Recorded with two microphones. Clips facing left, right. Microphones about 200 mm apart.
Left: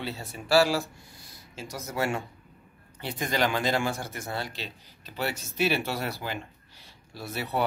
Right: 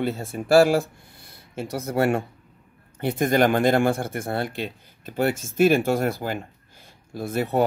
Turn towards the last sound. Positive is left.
turn(degrees=-50)  # may be behind; listen again after turning